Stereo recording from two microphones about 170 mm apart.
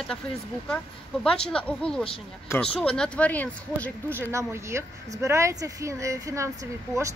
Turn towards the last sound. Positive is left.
turn(degrees=-15)  # may be behind; listen again after turning